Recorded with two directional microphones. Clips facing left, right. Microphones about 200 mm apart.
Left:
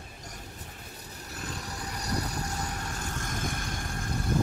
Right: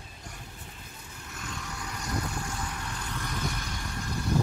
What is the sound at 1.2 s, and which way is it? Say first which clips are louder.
Vehicle: left 1 dB; 35° left (ahead or behind).